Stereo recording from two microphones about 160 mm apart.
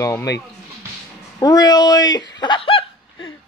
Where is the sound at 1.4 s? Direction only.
25° left (ahead or behind).